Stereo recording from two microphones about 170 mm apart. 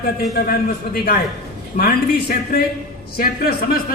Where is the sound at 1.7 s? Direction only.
60° left (ahead or behind).